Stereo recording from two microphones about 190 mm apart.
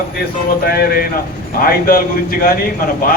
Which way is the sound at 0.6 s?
50° left (ahead or behind).